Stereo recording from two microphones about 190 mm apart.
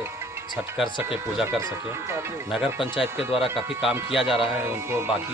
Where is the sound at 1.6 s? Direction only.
15° right (ahead or behind).